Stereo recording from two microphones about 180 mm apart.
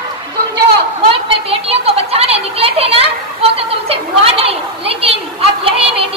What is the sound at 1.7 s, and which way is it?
A woman's voice, 35° right (ahead or behind).